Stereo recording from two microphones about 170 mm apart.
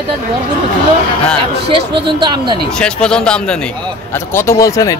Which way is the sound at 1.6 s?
30° right (ahead or behind).